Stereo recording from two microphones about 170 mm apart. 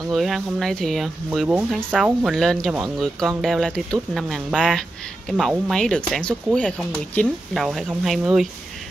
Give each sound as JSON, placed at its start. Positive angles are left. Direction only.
{"t": 0.1, "sound": "speech", "side_deg": 0}